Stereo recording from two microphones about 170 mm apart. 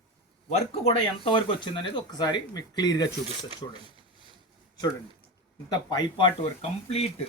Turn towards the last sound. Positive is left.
turn(degrees=35)  # may be behind; listen again after turning